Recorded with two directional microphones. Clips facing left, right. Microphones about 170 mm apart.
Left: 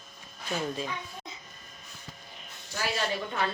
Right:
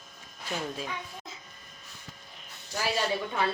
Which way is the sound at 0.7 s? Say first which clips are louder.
Left 2 dB; 5° right (ahead or behind).